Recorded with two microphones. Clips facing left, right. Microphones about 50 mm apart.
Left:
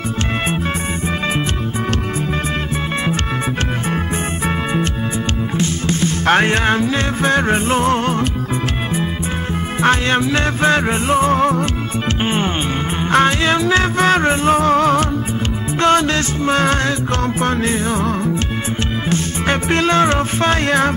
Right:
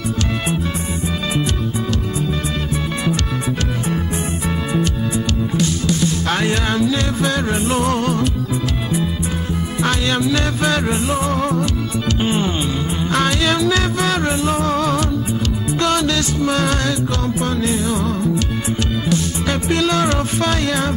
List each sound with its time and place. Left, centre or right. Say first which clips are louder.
5.6 s music: even; left
9.8 s music: left 5 dB; left